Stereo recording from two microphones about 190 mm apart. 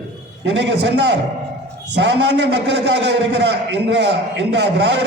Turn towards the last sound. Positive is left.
turn(degrees=-65)  # may be behind; listen again after turning